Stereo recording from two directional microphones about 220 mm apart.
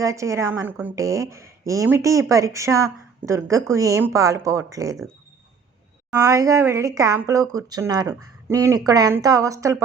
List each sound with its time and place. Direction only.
0.0 s a woman's voice: 15° right (ahead or behind)
6.1 s a woman's voice: 15° right (ahead or behind)